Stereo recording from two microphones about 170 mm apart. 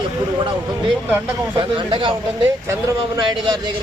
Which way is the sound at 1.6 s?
30° right (ahead or behind).